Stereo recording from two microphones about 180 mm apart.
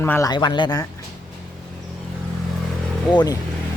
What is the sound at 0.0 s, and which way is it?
Speech, 15° left (ahead or behind).